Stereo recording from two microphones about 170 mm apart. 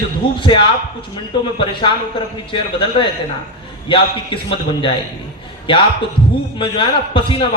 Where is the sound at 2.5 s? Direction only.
30° left (ahead or behind).